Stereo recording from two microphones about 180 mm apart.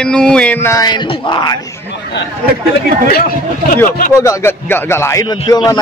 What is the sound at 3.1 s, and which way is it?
Speech, 55° left (ahead or behind).